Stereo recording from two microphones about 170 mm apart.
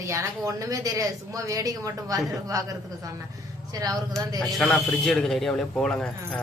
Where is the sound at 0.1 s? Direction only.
20° right (ahead or behind).